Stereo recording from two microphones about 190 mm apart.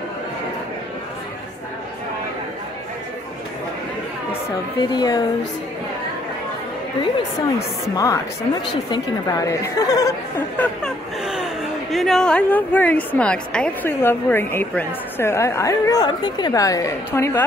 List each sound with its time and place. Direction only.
4.3 s a woman's voice: 25° left (ahead or behind)
7.9 s speech: 15° left (ahead or behind)
10.6 s speech: centre (ahead or behind)